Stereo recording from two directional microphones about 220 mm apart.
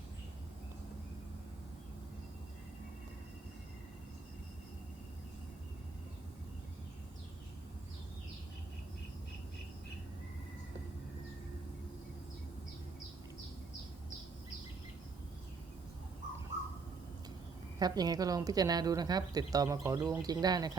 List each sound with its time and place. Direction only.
17.7 s speech: 20° right (ahead or behind)